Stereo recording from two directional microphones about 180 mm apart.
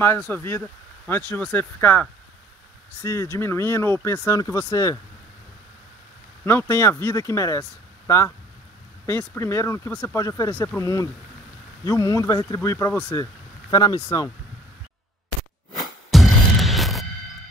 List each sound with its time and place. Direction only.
0.3 s speech: 15° left (ahead or behind)
6.4 s speech: 15° left (ahead or behind)
9.3 s speech: 15° left (ahead or behind)
16.1 s music: centre (ahead or behind)